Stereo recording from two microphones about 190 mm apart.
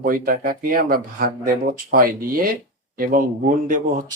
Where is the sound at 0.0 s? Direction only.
50° right (ahead or behind).